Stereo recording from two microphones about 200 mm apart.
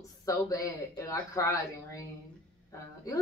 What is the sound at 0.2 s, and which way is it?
Speech, 15° left (ahead or behind).